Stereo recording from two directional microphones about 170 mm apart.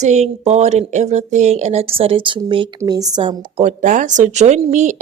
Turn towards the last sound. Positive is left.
turn(degrees=-45)  # may be behind; listen again after turning